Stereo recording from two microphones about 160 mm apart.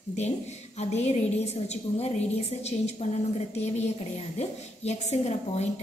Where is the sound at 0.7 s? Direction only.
45° left (ahead or behind).